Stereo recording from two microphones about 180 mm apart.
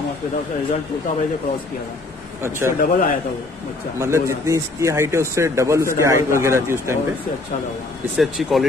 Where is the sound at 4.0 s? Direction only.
15° right (ahead or behind).